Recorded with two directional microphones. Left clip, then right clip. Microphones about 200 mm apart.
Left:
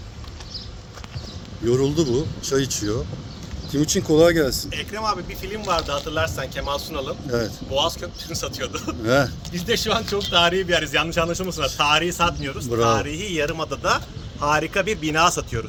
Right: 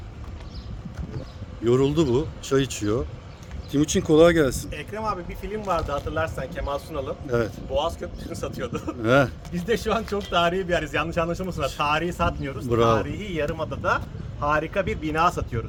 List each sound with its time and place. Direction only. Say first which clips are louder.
1.6 s a man's voice: even; 5° right (ahead or behind); by 12.6 s 10° left (ahead or behind)
12.6 s speech: even; 10° right (ahead or behind)
12.9 s speech: left 2 dB; 15° left (ahead or behind)